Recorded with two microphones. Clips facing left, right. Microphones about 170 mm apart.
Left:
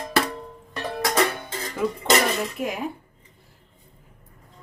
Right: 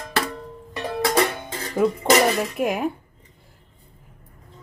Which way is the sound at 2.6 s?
50° right (ahead or behind).